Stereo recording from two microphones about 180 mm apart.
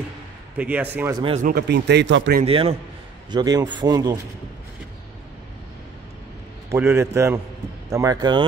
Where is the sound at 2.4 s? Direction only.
30° right (ahead or behind).